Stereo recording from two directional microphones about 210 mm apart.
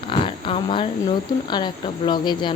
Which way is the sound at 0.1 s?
25° left (ahead or behind).